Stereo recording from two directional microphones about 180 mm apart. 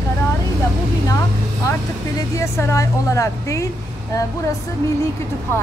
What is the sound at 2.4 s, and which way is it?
A woman's voice, 15° left (ahead or behind).